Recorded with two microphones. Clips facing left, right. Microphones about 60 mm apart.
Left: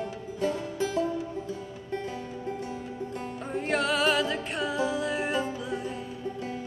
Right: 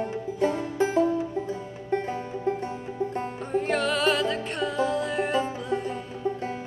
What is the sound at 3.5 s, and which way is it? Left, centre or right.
Music, centre.